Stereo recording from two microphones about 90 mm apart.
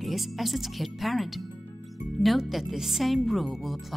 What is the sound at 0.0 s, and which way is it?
Speech, centre (ahead or behind).